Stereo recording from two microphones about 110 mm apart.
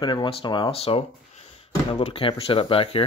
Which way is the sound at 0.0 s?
45° left (ahead or behind).